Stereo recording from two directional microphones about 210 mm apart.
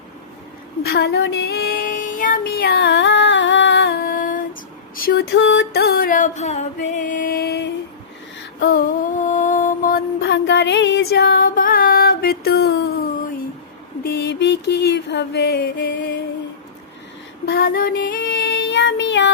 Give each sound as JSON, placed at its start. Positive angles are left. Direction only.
{"t": 0.8, "sound": "child singing", "side_deg": 50}
{"t": 4.9, "sound": "a sound", "side_deg": 45}
{"t": 8.6, "sound": "music", "side_deg": 40}
{"t": 10.2, "sound": "music", "side_deg": 55}
{"t": 17.4, "sound": "child singing", "side_deg": 45}